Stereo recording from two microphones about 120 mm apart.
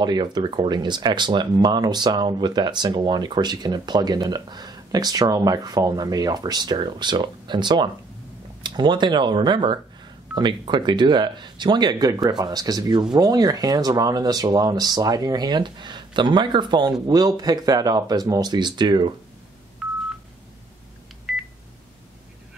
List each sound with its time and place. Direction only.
0.0 s speech: 35° right (ahead or behind)
19.8 s telephone dialing: 5° right (ahead or behind)
21.3 s beep: 5° right (ahead or behind)